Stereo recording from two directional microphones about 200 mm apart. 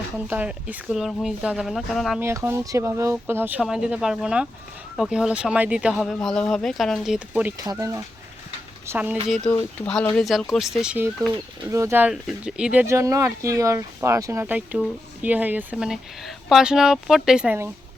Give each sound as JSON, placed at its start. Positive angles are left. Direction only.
{"t": 0.3, "sound": "speech", "side_deg": -10}
{"t": 2.2, "sound": "speech", "side_deg": -15}
{"t": 7.6, "sound": "speech", "side_deg": -15}
{"t": 9.5, "sound": "speech", "side_deg": 5}